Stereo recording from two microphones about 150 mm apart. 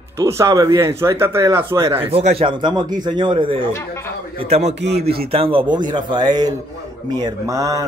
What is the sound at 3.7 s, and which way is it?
Speech, 20° left (ahead or behind).